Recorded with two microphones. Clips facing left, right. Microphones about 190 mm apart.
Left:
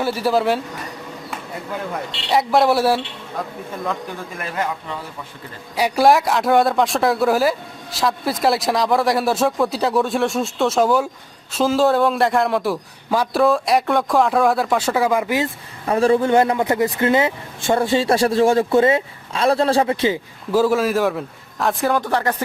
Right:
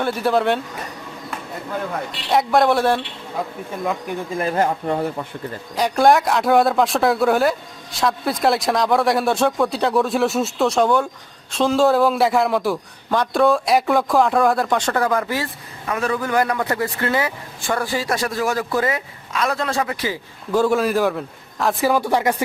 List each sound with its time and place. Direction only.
0.0 s a man's voice: 5° left (ahead or behind)
2.3 s a man's voice: centre (ahead or behind)
4.4 s speech: 35° right (ahead or behind); by 5.1 s 55° right (ahead or behind)
5.7 s a man's voice: 5° left (ahead or behind)
15.9 s speech: 30° left (ahead or behind)
20.5 s a man's voice: 5° left (ahead or behind)